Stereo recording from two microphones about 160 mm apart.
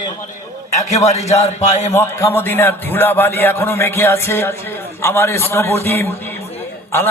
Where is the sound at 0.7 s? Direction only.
45° left (ahead or behind).